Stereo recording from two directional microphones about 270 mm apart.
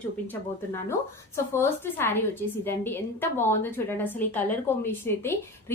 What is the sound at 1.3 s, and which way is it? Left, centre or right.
A woman's voice, centre.